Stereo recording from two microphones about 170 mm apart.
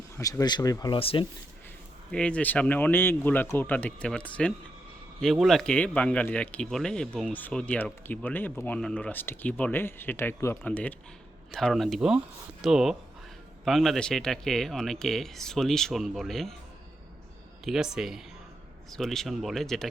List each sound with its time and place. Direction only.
0.2 s speech: 20° left (ahead or behind)
2.1 s speech: 5° left (ahead or behind)
17.7 s speech: 5° right (ahead or behind)